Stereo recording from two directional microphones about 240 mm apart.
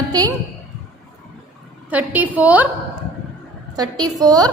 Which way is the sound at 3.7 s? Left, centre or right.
Centre.